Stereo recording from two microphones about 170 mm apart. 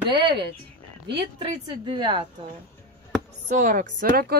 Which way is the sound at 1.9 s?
25° right (ahead or behind).